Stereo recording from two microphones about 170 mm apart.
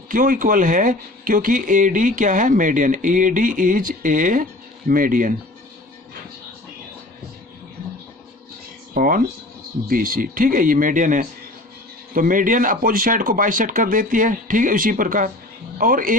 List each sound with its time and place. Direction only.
0.1 s speech: 55° right (ahead or behind)
9.0 s speech: 55° right (ahead or behind)